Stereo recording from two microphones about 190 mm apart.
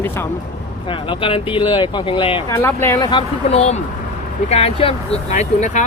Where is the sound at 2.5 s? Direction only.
15° left (ahead or behind).